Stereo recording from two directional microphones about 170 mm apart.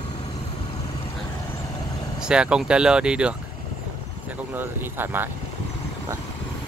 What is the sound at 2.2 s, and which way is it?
Speech, 5° right (ahead or behind).